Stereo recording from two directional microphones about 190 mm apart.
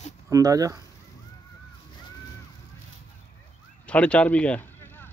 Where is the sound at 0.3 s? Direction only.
20° right (ahead or behind).